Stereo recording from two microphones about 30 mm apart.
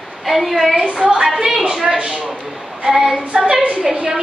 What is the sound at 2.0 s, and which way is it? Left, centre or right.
Speech, right.